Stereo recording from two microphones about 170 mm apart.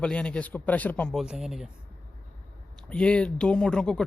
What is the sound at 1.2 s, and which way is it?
Speech, 5° right (ahead or behind).